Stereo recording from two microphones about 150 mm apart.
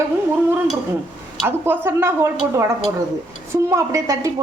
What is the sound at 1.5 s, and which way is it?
A woman's voice, 15° right (ahead or behind).